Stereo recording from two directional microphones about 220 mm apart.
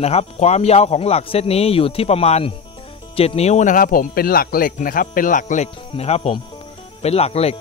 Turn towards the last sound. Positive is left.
turn(degrees=30)  # may be behind; listen again after turning